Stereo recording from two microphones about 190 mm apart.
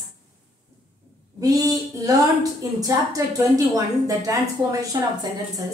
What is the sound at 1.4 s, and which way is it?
A woman's voice, 20° right (ahead or behind).